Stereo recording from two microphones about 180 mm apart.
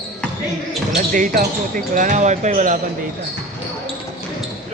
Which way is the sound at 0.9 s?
50° right (ahead or behind).